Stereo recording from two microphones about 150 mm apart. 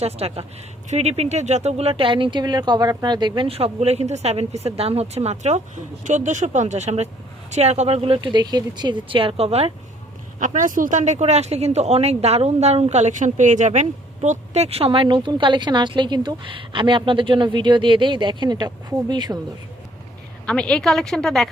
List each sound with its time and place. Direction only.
0.0 s speech: 40° right (ahead or behind)
10.4 s speech: 55° right (ahead or behind); by 19.4 s 30° right (ahead or behind)
20.5 s a woman's voice: 5° left (ahead or behind)